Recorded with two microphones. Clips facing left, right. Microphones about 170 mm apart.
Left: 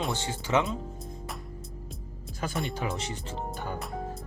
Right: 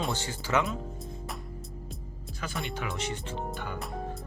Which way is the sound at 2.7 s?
35° left (ahead or behind).